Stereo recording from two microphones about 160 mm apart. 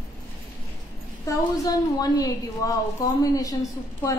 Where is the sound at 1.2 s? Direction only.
20° left (ahead or behind).